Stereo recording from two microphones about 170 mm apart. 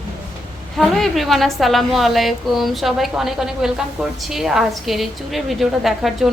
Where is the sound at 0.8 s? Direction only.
Centre (ahead or behind).